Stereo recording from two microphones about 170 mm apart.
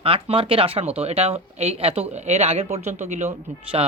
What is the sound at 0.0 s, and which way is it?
Speech, 35° right (ahead or behind).